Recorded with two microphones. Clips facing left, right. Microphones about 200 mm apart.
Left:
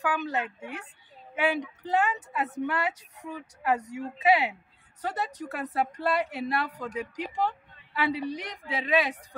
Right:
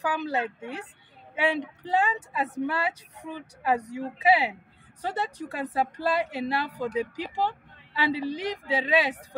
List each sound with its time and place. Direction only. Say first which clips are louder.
0.0 s a woman's voice: right 1 dB; 35° right (ahead or behind)